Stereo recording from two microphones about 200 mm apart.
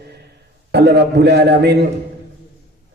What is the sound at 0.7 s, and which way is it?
A man's voice, 55° right (ahead or behind).